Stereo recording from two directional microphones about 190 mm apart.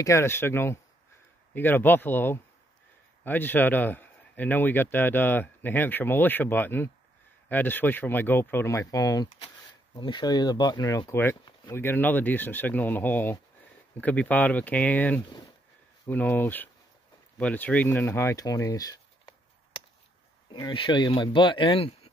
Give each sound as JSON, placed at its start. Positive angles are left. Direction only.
{"t": 0.0, "sound": "a man's voice", "side_deg": 15}